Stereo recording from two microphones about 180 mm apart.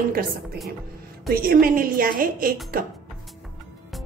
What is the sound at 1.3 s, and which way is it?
A woman's voice, 55° right (ahead or behind).